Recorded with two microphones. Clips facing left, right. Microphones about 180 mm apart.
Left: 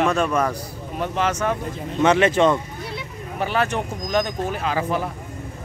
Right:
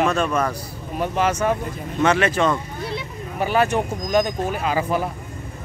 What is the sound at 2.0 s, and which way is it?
Speech, 20° left (ahead or behind).